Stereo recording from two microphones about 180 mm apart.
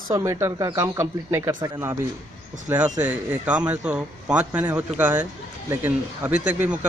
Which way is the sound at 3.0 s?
10° right (ahead or behind).